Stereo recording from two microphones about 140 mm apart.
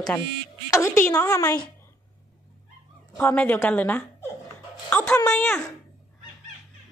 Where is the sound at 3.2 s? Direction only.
10° left (ahead or behind).